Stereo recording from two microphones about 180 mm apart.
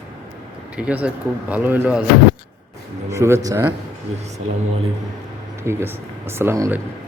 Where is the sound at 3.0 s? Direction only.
15° right (ahead or behind).